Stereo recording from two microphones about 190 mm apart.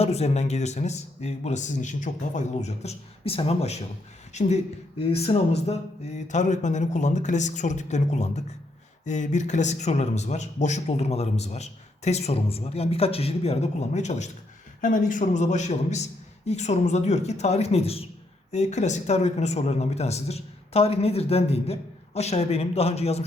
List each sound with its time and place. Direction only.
0.0 s speech: 35° left (ahead or behind)